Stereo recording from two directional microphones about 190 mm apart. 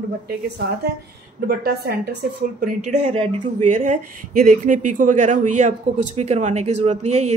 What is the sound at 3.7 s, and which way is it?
Speech, 45° right (ahead or behind).